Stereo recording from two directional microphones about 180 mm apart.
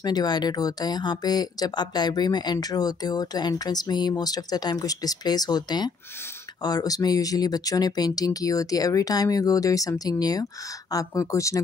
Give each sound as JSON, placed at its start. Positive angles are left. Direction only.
{"t": 0.0, "sound": "speech", "side_deg": 20}